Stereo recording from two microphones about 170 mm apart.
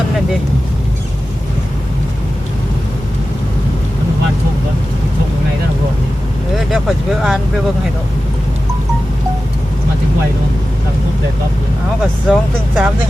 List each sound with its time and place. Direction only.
6.7 s speech: centre (ahead or behind)
12.3 s speech: 5° right (ahead or behind)